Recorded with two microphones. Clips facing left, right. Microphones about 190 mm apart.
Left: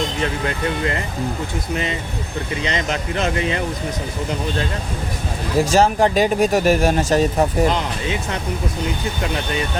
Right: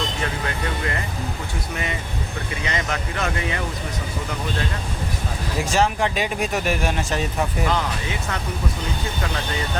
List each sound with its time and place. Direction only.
0.2 s speech: 25° left (ahead or behind)
5.7 s speech: 40° left (ahead or behind)